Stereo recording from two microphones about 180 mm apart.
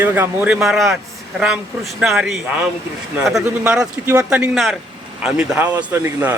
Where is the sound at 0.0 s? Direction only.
10° right (ahead or behind).